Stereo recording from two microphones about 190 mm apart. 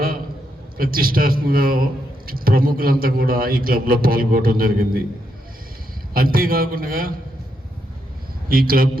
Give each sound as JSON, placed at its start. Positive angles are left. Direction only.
{"t": 0.8, "sound": "a man's voice", "side_deg": -50}
{"t": 6.1, "sound": "a man's voice", "side_deg": -50}
{"t": 8.4, "sound": "a man's voice", "side_deg": -50}